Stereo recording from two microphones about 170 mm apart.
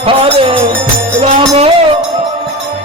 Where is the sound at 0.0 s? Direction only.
35° right (ahead or behind).